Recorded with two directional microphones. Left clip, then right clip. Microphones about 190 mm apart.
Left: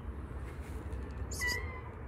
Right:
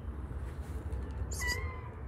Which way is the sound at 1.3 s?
20° right (ahead or behind).